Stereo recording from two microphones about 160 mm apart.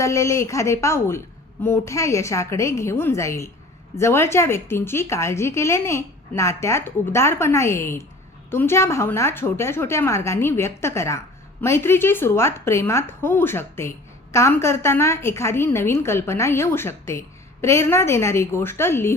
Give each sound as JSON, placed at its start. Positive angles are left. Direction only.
{"t": 0.0, "sound": "a woman's voice", "side_deg": 20}